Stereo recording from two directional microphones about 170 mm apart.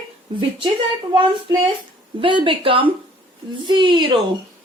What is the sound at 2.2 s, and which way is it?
A woman's voice, 30° right (ahead or behind).